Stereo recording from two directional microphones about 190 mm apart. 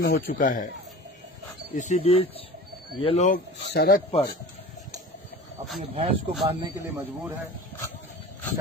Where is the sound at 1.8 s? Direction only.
35° left (ahead or behind).